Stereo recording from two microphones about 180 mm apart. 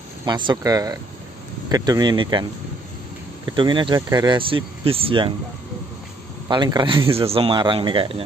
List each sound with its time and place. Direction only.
0.2 s speech: 20° right (ahead or behind)
3.4 s speech: 25° right (ahead or behind)
6.5 s speech: 25° right (ahead or behind)